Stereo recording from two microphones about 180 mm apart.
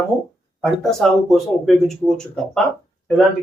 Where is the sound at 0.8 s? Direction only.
Centre (ahead or behind).